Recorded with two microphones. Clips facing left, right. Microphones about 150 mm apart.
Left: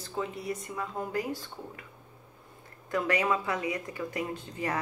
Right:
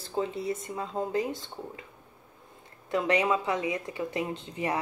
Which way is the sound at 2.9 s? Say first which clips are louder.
Right 2 dB; 20° right (ahead or behind).